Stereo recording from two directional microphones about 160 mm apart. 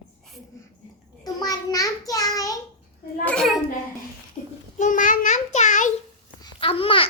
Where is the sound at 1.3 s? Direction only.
25° left (ahead or behind).